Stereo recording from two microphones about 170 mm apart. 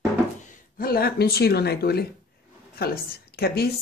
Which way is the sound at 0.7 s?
60° left (ahead or behind).